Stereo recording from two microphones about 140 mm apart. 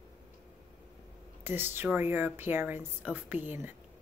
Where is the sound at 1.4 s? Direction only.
15° right (ahead or behind).